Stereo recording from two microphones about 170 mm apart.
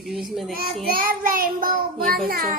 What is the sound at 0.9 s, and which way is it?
A child's voice, 55° right (ahead or behind).